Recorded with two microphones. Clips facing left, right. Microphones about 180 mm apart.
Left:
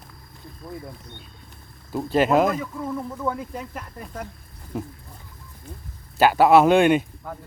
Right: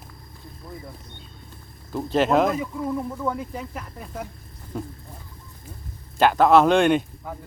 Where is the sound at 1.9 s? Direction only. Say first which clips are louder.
Left 1 dB; 5° left (ahead or behind).